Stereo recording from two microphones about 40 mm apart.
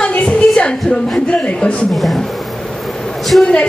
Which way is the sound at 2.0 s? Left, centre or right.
Centre.